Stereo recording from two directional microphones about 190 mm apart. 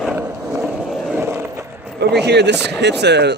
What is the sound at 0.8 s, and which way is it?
Skateboard, centre (ahead or behind).